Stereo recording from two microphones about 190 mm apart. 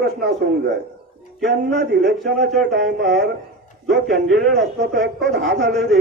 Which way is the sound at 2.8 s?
Centre (ahead or behind).